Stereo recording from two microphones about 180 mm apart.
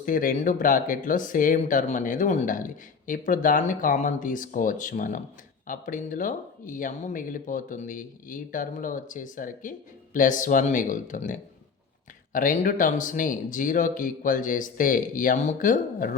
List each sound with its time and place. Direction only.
0.0 s speech: 50° left (ahead or behind)